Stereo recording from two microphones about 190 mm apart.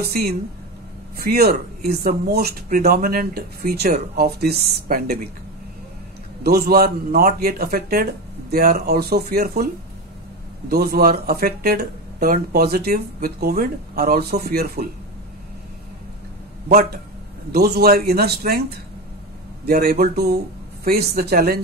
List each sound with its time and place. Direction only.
0.1 s speech: 55° right (ahead or behind)
6.4 s speech: 55° right (ahead or behind)
10.7 s speech: 55° right (ahead or behind)
16.6 s a man's voice: 55° right (ahead or behind)
19.6 s speech: 55° right (ahead or behind)